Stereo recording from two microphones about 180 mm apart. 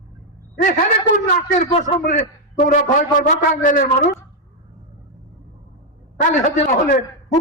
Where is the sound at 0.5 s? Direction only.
45° left (ahead or behind).